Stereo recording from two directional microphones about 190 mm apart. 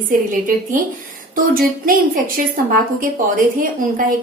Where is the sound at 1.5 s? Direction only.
50° right (ahead or behind).